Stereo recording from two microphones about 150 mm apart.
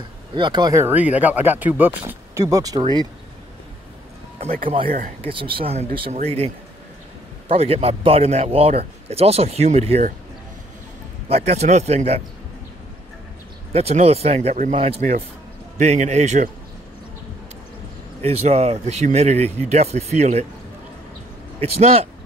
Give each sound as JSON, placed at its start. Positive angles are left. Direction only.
{"t": 0.3, "sound": "speech", "side_deg": -30}
{"t": 0.8, "sound": "speech", "side_deg": -10}
{"t": 4.8, "sound": "speech", "side_deg": -60}
{"t": 5.2, "sound": "speech", "side_deg": -35}
{"t": 11.2, "sound": "speech", "side_deg": -45}
{"t": 13.7, "sound": "speech", "side_deg": -45}
{"t": 18.2, "sound": "speech", "side_deg": -45}
{"t": 21.5, "sound": "speech", "side_deg": -40}